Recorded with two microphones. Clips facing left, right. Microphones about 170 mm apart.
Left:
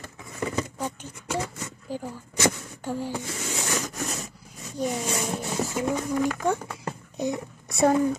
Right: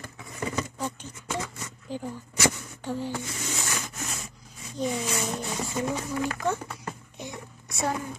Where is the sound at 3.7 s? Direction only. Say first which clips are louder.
Left 6 dB; 40° left (ahead or behind).